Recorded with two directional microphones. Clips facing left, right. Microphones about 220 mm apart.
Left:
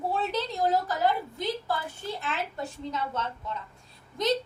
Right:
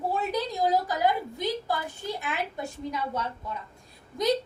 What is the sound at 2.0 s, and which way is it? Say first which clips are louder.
A woman's voice: right 1 dB; 15° right (ahead or behind).